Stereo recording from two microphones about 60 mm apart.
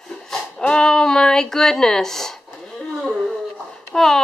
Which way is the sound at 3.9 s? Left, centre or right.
Centre.